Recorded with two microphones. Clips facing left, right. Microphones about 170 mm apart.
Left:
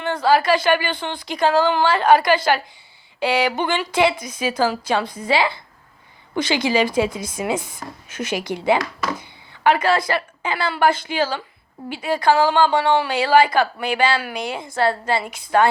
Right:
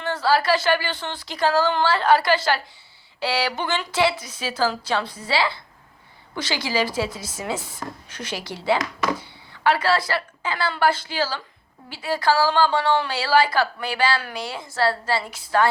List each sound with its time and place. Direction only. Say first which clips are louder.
0.0 s a woman's voice: left 3 dB; 15° left (ahead or behind)